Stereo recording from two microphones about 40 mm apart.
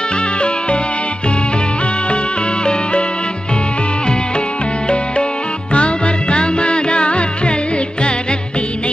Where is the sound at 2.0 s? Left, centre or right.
Left.